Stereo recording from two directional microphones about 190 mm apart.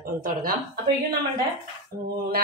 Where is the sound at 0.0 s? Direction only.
45° right (ahead or behind).